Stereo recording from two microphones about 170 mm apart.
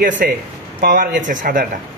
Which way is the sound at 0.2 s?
60° right (ahead or behind).